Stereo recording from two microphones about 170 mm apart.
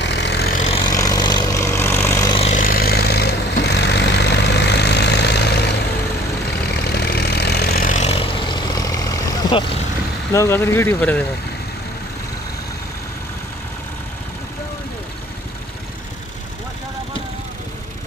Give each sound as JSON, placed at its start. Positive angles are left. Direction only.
{"t": 0.0, "sound": "vehicle", "side_deg": 85}
{"t": 0.8, "sound": "vehicle", "side_deg": 20}
{"t": 2.5, "sound": "vehicle", "side_deg": 55}
{"t": 10.3, "sound": "speech", "side_deg": 15}